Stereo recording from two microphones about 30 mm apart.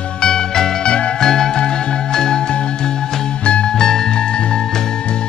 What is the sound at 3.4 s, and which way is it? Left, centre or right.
Music, left.